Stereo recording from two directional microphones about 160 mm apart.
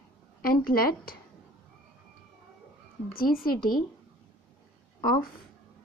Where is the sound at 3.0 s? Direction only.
65° left (ahead or behind).